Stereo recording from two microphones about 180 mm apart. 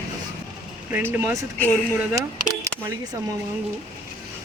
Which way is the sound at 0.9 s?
10° right (ahead or behind).